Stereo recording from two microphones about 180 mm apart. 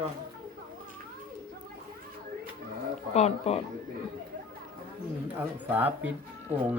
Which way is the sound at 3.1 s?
35° left (ahead or behind).